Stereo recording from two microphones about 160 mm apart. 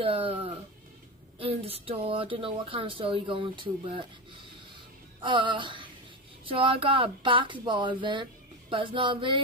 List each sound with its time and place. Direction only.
0.0 s speech: 35° right (ahead or behind)
5.2 s speech: 30° right (ahead or behind)